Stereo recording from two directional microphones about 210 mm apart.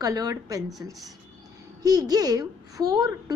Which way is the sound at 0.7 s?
Centre (ahead or behind).